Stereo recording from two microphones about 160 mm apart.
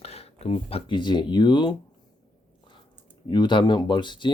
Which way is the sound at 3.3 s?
30° left (ahead or behind).